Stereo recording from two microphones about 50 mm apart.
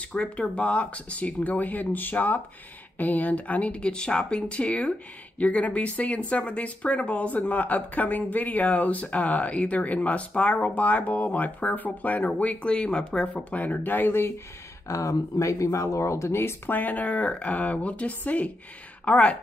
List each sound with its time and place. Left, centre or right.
0.0 s speech: left
14.9 s speech: left
16.7 s speech: left